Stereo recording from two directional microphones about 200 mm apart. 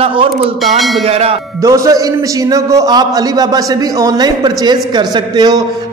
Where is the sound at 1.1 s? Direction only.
30° right (ahead or behind).